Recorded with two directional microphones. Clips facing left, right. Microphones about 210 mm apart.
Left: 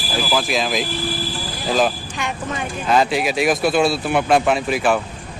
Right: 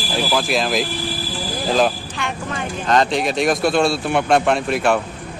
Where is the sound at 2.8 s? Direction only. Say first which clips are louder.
Even; 5° left (ahead or behind).